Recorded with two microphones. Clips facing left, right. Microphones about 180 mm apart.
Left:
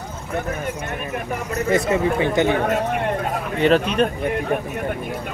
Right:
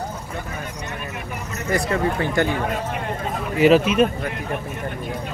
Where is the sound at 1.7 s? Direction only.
20° left (ahead or behind).